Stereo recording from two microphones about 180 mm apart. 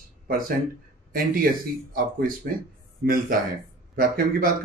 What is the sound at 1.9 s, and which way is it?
Speech, 50° right (ahead or behind).